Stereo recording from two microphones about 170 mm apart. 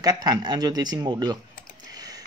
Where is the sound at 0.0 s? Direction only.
20° right (ahead or behind).